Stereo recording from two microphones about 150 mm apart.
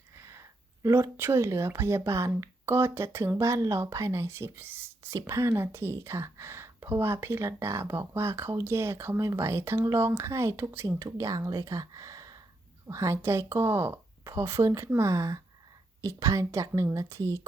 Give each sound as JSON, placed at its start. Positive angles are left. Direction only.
{"t": 0.2, "sound": "a woman's voice", "side_deg": -20}